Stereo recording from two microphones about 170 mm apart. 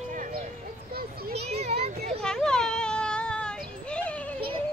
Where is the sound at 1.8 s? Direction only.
40° right (ahead or behind).